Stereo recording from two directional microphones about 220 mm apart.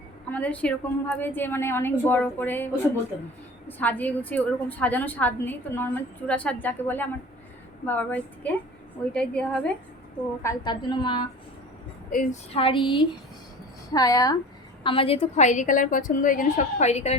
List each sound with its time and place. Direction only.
0.3 s a woman's voice: 5° left (ahead or behind)
3.7 s a woman's voice: 5° left (ahead or behind)
10.4 s a woman's voice: 20° left (ahead or behind)
12.1 s a woman's voice: 40° left (ahead or behind)
12.5 s a woman's voice: 25° left (ahead or behind)